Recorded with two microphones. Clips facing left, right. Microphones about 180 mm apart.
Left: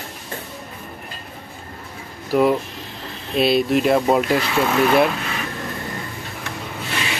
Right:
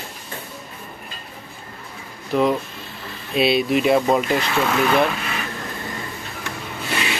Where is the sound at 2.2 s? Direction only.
5° left (ahead or behind).